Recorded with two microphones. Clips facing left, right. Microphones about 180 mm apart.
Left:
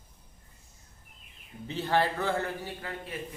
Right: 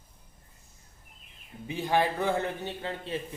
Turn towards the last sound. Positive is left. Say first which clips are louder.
# right 4 dB
turn(degrees=-25)  # may be behind; listen again after turning